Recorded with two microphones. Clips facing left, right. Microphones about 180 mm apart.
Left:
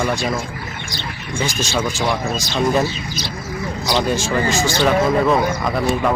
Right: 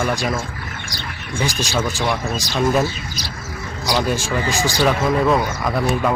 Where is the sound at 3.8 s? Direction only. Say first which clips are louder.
Left 1 dB; 10° right (ahead or behind).